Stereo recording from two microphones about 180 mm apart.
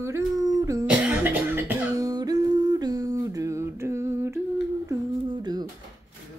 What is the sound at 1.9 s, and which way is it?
Music, 20° right (ahead or behind).